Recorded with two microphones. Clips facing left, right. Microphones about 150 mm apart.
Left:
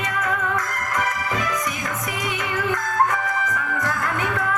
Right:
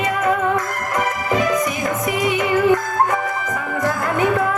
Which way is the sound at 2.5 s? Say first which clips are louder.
Right 9 dB; 30° right (ahead or behind).